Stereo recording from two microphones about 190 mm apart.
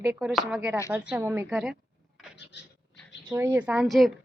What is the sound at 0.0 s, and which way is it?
A woman's voice, 5° right (ahead or behind).